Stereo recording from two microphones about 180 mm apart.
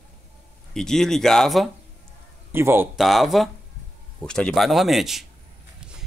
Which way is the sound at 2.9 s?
Centre (ahead or behind).